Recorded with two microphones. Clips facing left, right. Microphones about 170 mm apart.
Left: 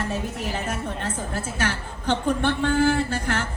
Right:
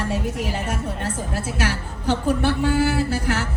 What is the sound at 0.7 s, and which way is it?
A woman's voice, 10° right (ahead or behind).